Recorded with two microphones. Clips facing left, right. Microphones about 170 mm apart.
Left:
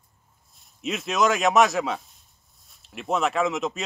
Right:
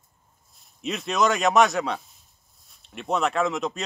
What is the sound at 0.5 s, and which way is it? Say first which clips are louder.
A man's voice: left 1 dB; centre (ahead or behind).